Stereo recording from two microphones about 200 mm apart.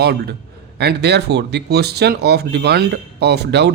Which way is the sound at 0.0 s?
50° right (ahead or behind).